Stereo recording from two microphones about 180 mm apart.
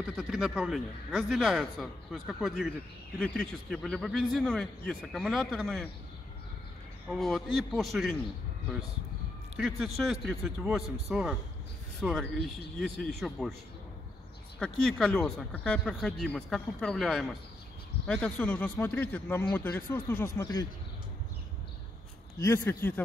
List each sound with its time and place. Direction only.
0.1 s speech: 5° right (ahead or behind)
7.1 s speech: centre (ahead or behind)
9.6 s speech: centre (ahead or behind)
14.6 s speech: 5° left (ahead or behind)
22.4 s speech: 15° left (ahead or behind)